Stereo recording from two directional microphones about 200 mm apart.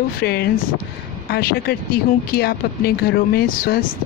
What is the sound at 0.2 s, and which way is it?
Speech, 55° left (ahead or behind).